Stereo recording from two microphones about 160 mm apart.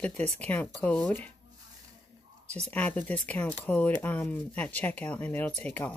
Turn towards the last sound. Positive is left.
turn(degrees=10)  # may be behind; listen again after turning